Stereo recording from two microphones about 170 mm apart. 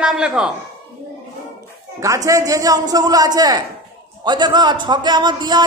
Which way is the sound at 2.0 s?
20° right (ahead or behind).